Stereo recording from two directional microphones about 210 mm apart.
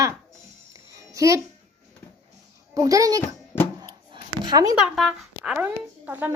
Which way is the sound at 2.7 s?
15° right (ahead or behind).